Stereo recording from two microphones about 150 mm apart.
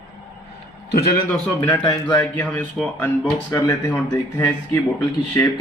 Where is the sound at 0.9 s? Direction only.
90° left.